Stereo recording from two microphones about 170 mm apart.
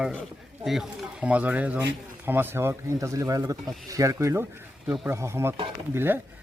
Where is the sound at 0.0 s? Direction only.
Centre (ahead or behind).